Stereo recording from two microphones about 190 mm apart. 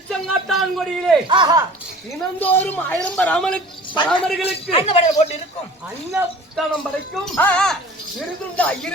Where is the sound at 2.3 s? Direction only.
10° left (ahead or behind).